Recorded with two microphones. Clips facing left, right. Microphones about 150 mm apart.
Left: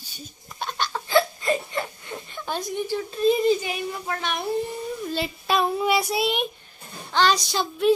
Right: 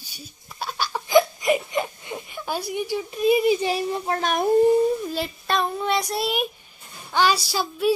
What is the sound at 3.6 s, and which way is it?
Speech, 35° right (ahead or behind).